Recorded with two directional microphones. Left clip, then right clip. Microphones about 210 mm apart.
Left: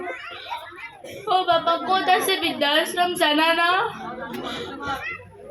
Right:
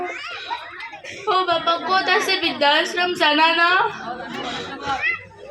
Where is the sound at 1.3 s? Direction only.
20° right (ahead or behind).